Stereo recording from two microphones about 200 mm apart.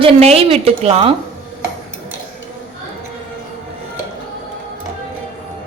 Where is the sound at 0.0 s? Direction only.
30° right (ahead or behind).